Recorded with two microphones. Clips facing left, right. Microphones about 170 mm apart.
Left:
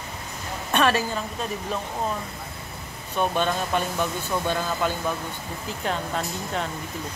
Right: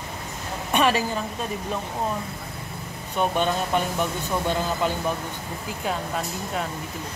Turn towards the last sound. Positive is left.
turn(degrees=-5)  # may be behind; listen again after turning